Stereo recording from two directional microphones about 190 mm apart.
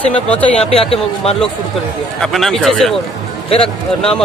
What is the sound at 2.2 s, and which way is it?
Speech, centre (ahead or behind).